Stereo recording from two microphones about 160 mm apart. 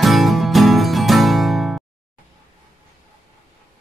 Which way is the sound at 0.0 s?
Centre (ahead or behind).